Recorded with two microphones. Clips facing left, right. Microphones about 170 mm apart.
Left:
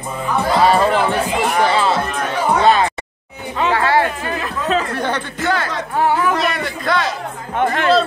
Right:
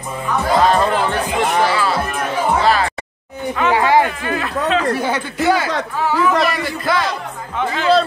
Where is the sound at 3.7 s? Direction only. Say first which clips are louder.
Right 2 dB; 15° right (ahead or behind).